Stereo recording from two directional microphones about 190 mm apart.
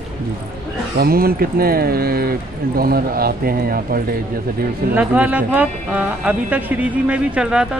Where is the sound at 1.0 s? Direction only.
55° right (ahead or behind).